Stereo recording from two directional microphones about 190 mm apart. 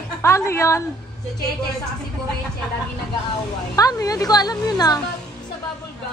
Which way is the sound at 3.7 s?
20° left (ahead or behind).